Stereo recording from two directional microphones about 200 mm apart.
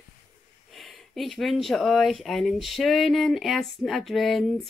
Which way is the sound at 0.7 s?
Centre (ahead or behind).